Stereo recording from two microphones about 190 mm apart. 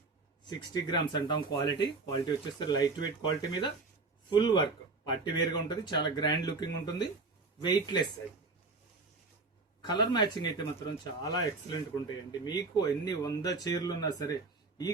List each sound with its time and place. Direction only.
0.4 s speech: 20° left (ahead or behind)
9.8 s speech: 25° left (ahead or behind)